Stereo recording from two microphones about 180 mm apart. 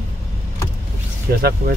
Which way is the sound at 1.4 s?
55° right (ahead or behind).